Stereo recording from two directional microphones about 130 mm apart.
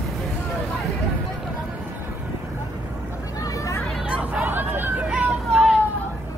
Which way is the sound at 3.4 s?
25° left (ahead or behind).